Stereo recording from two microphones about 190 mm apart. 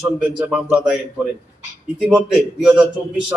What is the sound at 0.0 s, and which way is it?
A man's voice, 5° right (ahead or behind).